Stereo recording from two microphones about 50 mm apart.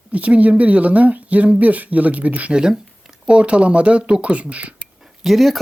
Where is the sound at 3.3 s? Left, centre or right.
Right.